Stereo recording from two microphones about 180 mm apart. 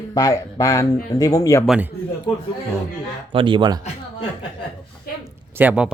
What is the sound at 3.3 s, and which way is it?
Speech, 25° right (ahead or behind).